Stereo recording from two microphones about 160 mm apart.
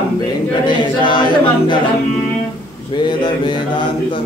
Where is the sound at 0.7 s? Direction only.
30° left (ahead or behind).